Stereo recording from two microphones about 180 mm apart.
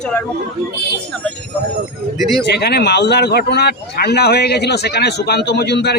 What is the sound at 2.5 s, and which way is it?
A man's voice, 65° left (ahead or behind).